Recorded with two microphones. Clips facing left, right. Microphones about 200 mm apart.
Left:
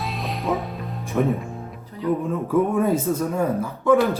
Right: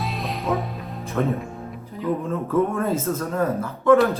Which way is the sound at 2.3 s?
15° left (ahead or behind).